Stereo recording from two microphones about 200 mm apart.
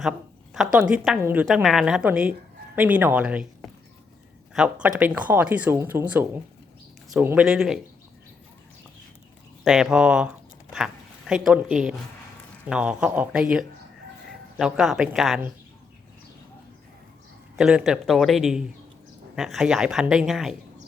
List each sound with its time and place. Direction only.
0.5 s speech: 5° right (ahead or behind)
9.6 s speech: 5° right (ahead or behind)
17.6 s speech: 5° right (ahead or behind)